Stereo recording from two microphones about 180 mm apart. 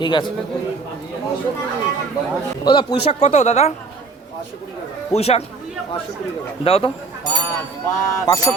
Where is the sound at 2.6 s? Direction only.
25° left (ahead or behind).